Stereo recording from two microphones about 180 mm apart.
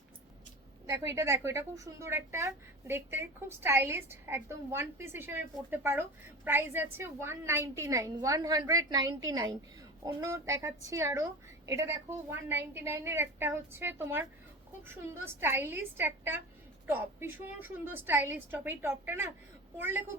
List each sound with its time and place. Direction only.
0.9 s a woman's voice: 15° right (ahead or behind)